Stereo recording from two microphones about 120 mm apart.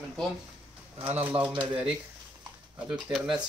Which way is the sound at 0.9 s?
55° right (ahead or behind).